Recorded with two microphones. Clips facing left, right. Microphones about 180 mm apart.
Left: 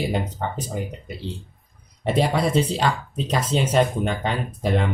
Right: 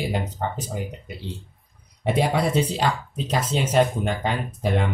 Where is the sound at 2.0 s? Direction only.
10° right (ahead or behind).